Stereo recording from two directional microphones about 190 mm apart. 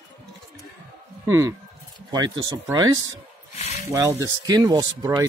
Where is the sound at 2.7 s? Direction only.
20° right (ahead or behind).